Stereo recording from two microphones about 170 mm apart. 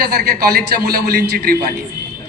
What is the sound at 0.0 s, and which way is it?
A man's voice, 60° right (ahead or behind).